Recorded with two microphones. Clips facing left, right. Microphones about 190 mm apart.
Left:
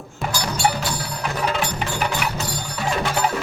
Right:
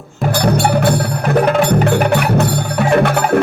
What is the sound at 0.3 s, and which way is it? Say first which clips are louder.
Music: right 9 dB; 60° right (ahead or behind).